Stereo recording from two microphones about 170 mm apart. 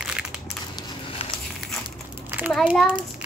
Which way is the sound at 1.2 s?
35° left (ahead or behind).